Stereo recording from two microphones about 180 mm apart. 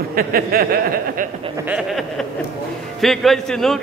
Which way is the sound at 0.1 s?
55° right (ahead or behind).